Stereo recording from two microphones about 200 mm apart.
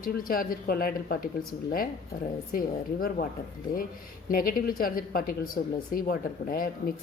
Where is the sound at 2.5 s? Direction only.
45° left (ahead or behind).